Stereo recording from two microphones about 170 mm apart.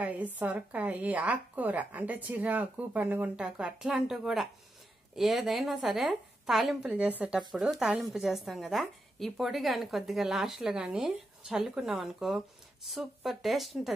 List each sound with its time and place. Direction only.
0.0 s a woman's voice: 10° right (ahead or behind)